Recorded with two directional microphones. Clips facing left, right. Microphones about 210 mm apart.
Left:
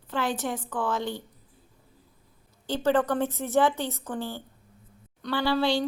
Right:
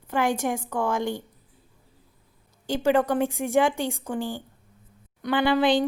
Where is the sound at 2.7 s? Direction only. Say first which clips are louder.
Right 2 dB; 10° right (ahead or behind).